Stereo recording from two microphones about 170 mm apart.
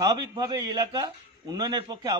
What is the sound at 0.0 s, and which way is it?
A man's voice, 20° right (ahead or behind).